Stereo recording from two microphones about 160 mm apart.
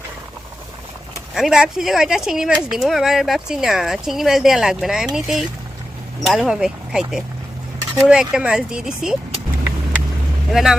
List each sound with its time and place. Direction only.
1.4 s speech: 5° right (ahead or behind)
10.5 s speech: 5° right (ahead or behind)